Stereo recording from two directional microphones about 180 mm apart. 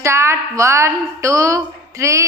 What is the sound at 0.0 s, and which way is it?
A woman's voice, 15° right (ahead or behind).